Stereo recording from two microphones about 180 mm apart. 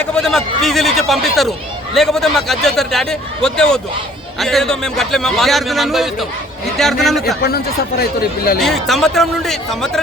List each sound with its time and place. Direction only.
0.0 s a man's voice: 5° left (ahead or behind)
7.4 s speech: 60° left (ahead or behind)
8.6 s a man's voice: centre (ahead or behind)